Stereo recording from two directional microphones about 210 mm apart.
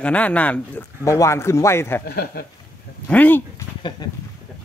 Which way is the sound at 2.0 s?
50° left (ahead or behind).